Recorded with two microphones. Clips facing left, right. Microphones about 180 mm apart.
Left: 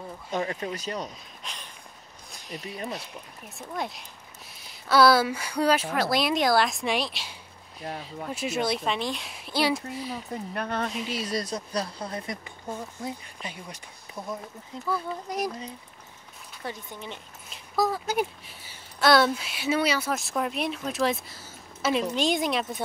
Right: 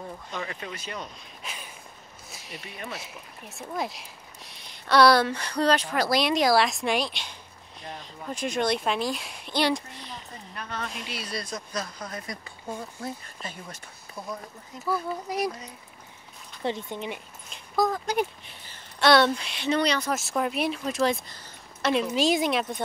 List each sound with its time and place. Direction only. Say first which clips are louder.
0.3 s speech: left 8 dB; 40° left (ahead or behind)
1.4 s a sound: right 3 dB; 5° right (ahead or behind)
2.6 s speech: left 5 dB; 35° left (ahead or behind)
2.9 s speech: left 2 dB; centre (ahead or behind)
10.5 s speech: left 5 dB; 55° left (ahead or behind)
11.1 s speech: left 5 dB; 40° left (ahead or behind); by 12.5 s 25° left (ahead or behind)
13.0 s speech: even; 15° left (ahead or behind)
14.1 s speech: left 1 dB; centre (ahead or behind)
16.6 s speech: right 7 dB; 25° right (ahead or behind)
17.5 s speech: right 1 dB; 5° left (ahead or behind)